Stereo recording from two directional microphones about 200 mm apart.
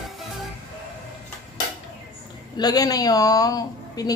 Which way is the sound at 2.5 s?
20° left (ahead or behind).